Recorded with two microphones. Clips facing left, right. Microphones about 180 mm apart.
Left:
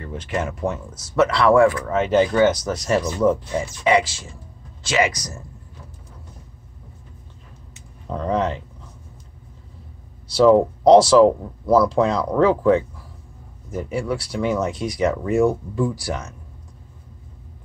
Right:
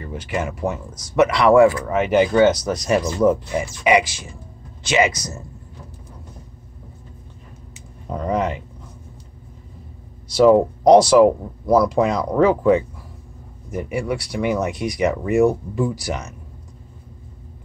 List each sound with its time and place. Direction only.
0.0 s speech: 5° right (ahead or behind); by 5.4 s 25° right (ahead or behind)
8.1 s speech: 10° right (ahead or behind)
10.2 s speech: 15° right (ahead or behind)